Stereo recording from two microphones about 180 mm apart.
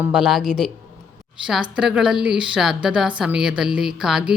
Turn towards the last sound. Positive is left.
turn(degrees=-5)  # may be behind; listen again after turning